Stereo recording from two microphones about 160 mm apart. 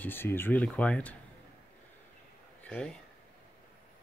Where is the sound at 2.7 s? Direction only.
5° left (ahead or behind).